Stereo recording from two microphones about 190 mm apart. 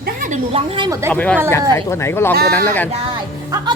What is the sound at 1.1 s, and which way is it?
Speech, 10° left (ahead or behind).